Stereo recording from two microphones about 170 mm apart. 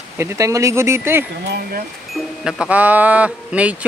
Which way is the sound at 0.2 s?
15° right (ahead or behind).